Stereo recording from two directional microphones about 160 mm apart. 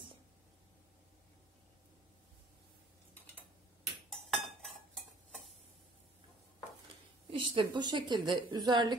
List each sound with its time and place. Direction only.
4.1 s cutlery: centre (ahead or behind)
7.2 s a woman's voice: 35° right (ahead or behind)